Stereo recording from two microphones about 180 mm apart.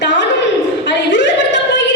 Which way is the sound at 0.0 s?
80° left.